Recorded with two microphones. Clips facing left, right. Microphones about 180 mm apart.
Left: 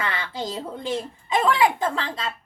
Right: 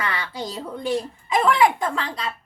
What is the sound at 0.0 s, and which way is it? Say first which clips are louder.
A child's voice: even; 25° left (ahead or behind).